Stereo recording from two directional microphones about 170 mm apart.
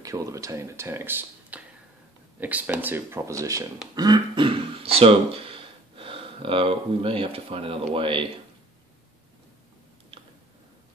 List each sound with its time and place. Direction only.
0.0 s speech: 20° right (ahead or behind)